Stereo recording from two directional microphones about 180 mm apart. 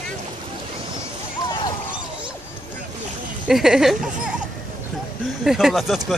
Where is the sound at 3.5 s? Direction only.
5° right (ahead or behind).